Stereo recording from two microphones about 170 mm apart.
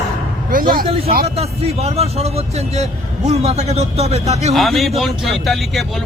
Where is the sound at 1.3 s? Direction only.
35° right (ahead or behind).